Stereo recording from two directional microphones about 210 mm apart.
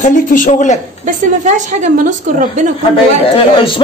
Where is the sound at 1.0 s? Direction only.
35° right (ahead or behind).